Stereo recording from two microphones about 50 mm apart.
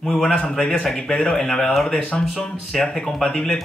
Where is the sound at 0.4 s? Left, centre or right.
Centre.